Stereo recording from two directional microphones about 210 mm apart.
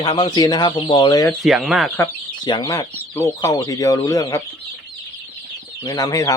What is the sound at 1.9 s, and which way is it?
Speech, 15° left (ahead or behind).